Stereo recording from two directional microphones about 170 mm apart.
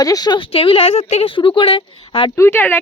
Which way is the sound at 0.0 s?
20° left (ahead or behind).